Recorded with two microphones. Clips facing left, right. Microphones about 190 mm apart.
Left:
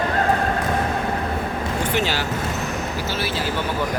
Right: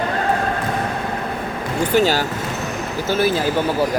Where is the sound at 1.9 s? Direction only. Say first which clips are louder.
Right 9 dB; 40° right (ahead or behind).